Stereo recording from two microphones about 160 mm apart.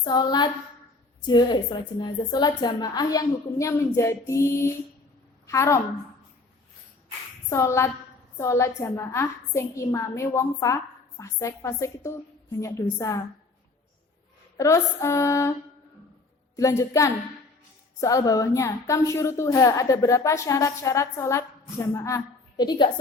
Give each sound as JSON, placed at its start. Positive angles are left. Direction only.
{"t": 0.0, "sound": "a woman's voice", "side_deg": 25}
{"t": 7.5, "sound": "a woman's voice", "side_deg": 15}
{"t": 14.6, "sound": "a woman's voice", "side_deg": 20}
{"t": 16.6, "sound": "a woman's voice", "side_deg": 20}